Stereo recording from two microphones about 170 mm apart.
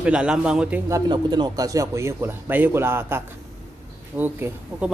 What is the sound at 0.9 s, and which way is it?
A man's voice, 25° right (ahead or behind).